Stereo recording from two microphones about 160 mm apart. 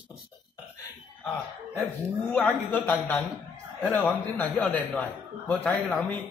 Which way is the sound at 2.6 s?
10° left (ahead or behind).